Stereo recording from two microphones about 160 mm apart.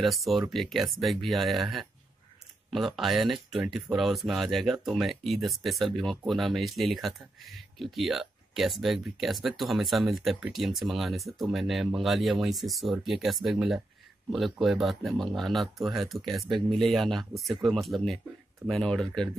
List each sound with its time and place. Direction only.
0.0 s speech: centre (ahead or behind)